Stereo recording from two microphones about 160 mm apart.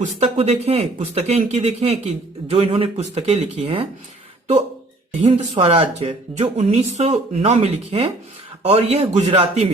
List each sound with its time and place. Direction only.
0.2 s speech: 40° right (ahead or behind)
5.5 s speech: 40° right (ahead or behind)